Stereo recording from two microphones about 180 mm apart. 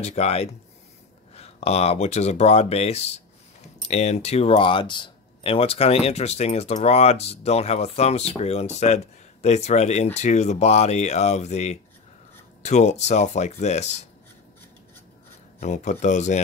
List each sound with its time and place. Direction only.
0.0 s speech: 40° left (ahead or behind)
15.6 s speech: 40° left (ahead or behind)